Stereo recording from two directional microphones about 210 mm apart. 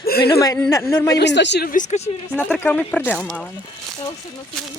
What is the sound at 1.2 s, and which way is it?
Speech, 55° left (ahead or behind).